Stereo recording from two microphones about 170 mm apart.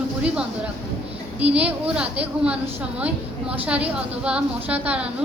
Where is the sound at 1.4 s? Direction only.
10° right (ahead or behind).